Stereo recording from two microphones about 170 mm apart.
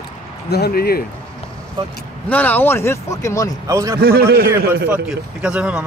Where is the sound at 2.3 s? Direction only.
10° left (ahead or behind).